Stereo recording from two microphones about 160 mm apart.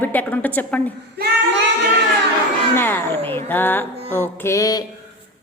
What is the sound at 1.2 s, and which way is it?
Child singing, 90° right.